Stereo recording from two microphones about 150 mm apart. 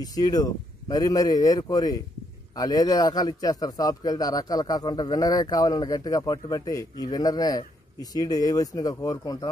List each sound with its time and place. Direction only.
0.0 s speech: 25° left (ahead or behind)